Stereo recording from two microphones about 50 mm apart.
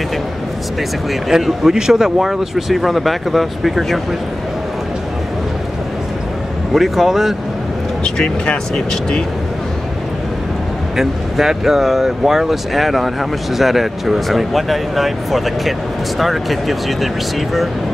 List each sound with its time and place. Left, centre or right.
1.3 s speech: centre
6.7 s speech: centre
8.0 s speech: centre
11.0 s speech: centre